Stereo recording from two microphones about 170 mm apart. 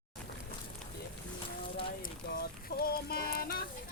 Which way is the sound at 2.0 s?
60° left (ahead or behind).